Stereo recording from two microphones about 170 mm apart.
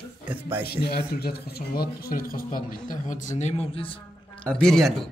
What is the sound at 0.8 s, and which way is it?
Speech, 65° left (ahead or behind).